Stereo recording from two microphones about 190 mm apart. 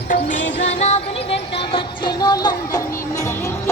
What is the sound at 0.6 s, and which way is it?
Music, 35° left (ahead or behind).